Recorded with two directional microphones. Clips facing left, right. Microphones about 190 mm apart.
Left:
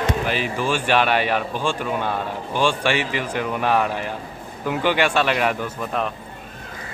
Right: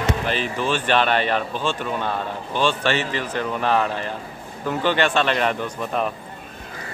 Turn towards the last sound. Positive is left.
turn(degrees=0)  # may be behind; listen again after turning